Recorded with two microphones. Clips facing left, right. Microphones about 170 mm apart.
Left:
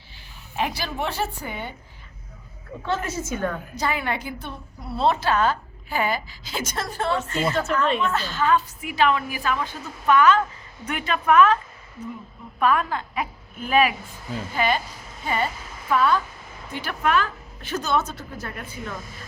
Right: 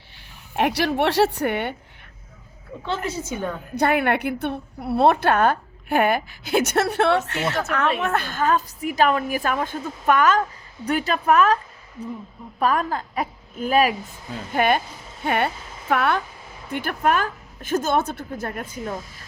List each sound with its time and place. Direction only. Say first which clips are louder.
0.5 s speech: right 6 dB; 75° right (ahead or behind)
2.8 s a woman's voice: even; 15° right (ahead or behind)
3.8 s a woman's voice: right 8 dB; 60° right (ahead or behind)
8.0 s a woman's voice: right 1 dB; 60° right (ahead or behind); by 11.5 s 40° right (ahead or behind)
12.5 s speech: even; 40° right (ahead or behind)
14.5 s a woman's voice: right 4 dB; 55° right (ahead or behind)
16.7 s a woman's voice: right 2 dB; 50° right (ahead or behind)